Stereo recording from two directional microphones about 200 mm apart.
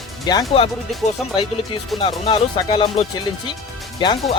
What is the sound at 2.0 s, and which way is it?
Speech, 25° left (ahead or behind).